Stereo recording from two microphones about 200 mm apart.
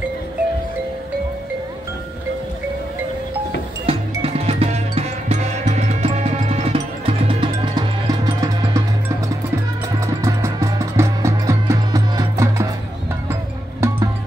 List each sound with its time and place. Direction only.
3.8 s music: 30° right (ahead or behind)
9.9 s music: 15° right (ahead or behind)